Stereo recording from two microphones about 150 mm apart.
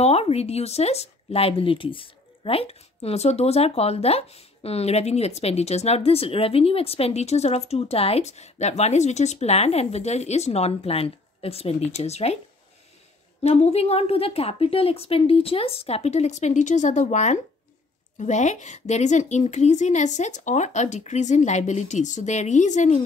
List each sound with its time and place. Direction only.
0.0 s speech: 45° left (ahead or behind)
13.4 s speech: 45° left (ahead or behind)